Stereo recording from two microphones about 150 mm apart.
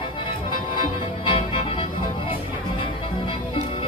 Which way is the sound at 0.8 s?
35° left (ahead or behind).